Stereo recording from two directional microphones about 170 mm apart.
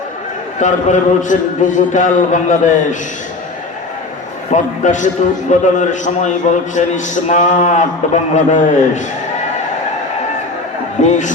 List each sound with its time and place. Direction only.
0.6 s a man's voice: 45° left (ahead or behind)
4.5 s a man's voice: 45° left (ahead or behind)
11.0 s a man's voice: 45° left (ahead or behind)